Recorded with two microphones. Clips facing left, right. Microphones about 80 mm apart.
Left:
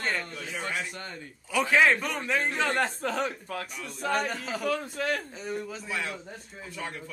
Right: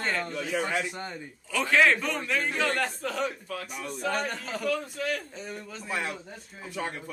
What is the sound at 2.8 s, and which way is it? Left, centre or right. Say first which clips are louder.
Speech: left 1 dB; left.